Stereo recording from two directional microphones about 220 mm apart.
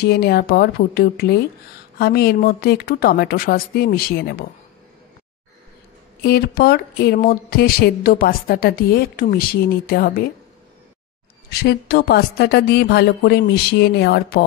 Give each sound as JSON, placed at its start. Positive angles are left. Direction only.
{"t": 0.0, "sound": "speech", "side_deg": 45}
{"t": 6.2, "sound": "speech", "side_deg": 45}
{"t": 11.6, "sound": "speech", "side_deg": 45}